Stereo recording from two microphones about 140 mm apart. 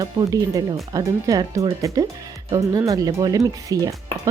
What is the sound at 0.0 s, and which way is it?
Speech, 25° right (ahead or behind).